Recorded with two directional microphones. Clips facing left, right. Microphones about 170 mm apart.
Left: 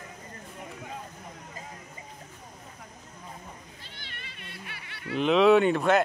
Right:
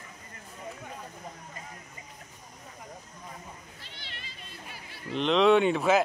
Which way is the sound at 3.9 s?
50° left (ahead or behind).